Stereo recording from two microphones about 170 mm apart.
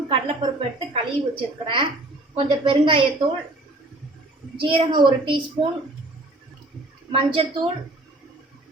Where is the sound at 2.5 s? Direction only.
30° right (ahead or behind).